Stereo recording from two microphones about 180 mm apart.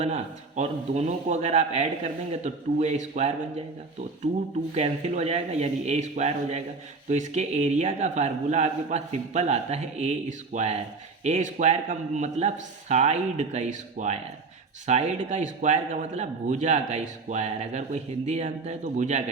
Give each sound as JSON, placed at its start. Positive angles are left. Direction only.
{"t": 0.0, "sound": "a man's voice", "side_deg": -40}
{"t": 4.7, "sound": "a man's voice", "side_deg": -35}